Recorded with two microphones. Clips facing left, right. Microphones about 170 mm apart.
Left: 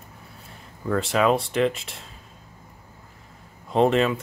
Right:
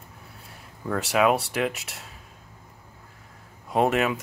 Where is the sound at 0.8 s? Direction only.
5° right (ahead or behind).